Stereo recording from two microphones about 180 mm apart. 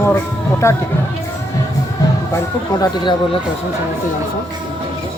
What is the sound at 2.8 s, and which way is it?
Speech, 25° left (ahead or behind).